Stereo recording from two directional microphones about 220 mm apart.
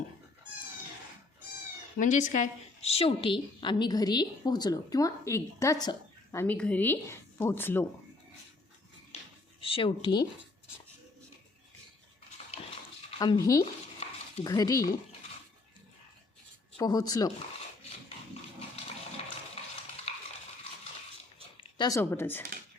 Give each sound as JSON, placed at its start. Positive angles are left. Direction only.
{"t": 2.0, "sound": "a woman's voice", "side_deg": 35}
{"t": 9.6, "sound": "speech", "side_deg": 25}
{"t": 13.1, "sound": "a woman's voice", "side_deg": 20}
{"t": 16.7, "sound": "a woman's voice", "side_deg": 15}
{"t": 20.1, "sound": "stir", "side_deg": 30}
{"t": 21.6, "sound": "speech", "side_deg": 20}